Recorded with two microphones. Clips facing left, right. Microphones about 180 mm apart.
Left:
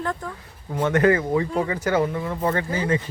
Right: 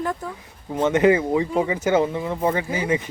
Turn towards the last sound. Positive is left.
turn(degrees=-15)  # may be behind; listen again after turning